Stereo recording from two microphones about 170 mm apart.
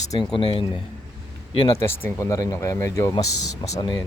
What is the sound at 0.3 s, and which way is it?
Speech, 30° left (ahead or behind).